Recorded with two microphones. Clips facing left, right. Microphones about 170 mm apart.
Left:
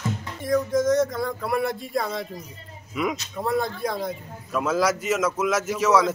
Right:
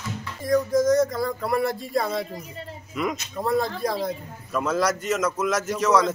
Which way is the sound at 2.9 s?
Centre (ahead or behind).